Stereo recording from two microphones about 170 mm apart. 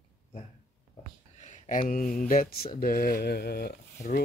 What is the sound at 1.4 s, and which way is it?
Speech, 45° left (ahead or behind).